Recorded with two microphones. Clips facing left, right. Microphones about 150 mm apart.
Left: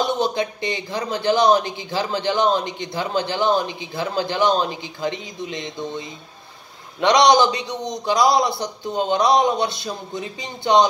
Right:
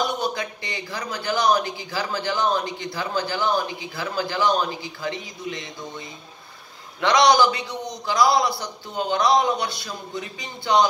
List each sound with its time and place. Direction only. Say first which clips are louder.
0.0 s speech: left 4 dB; 25° left (ahead or behind)